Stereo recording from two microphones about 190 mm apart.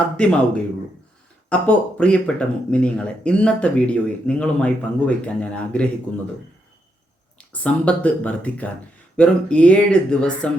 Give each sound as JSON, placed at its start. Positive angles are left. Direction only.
{"t": 0.2, "sound": "speech", "side_deg": 5}
{"t": 7.3, "sound": "speech", "side_deg": 5}